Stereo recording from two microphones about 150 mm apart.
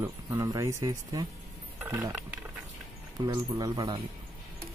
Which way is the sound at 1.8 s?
15° right (ahead or behind).